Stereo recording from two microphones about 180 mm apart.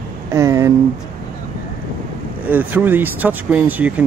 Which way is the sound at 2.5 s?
10° right (ahead or behind).